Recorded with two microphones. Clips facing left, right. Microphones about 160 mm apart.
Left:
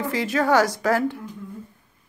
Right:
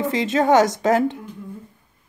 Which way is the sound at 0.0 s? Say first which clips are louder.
Right 3 dB; 20° right (ahead or behind).